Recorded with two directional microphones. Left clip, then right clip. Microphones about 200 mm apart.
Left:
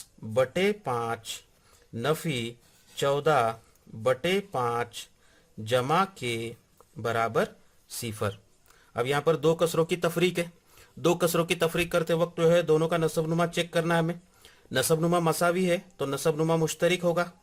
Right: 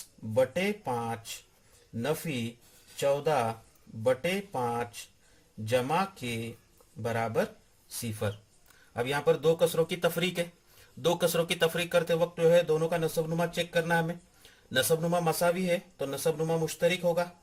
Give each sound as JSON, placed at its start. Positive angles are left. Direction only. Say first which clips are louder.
{"t": 0.3, "sound": "speech", "louder": "left 2 dB", "side_deg": 55}
{"t": 8.9, "sound": "speech", "louder": "left 2 dB", "side_deg": 40}